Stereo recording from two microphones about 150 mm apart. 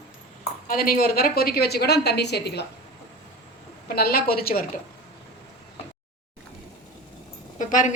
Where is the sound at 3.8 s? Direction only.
90° left.